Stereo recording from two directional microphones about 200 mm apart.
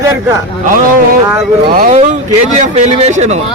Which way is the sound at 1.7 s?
40° right (ahead or behind).